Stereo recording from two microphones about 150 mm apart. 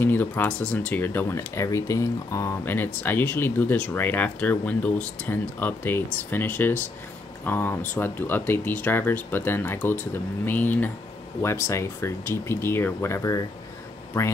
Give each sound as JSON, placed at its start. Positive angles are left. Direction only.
{"t": 0.0, "sound": "speech", "side_deg": 15}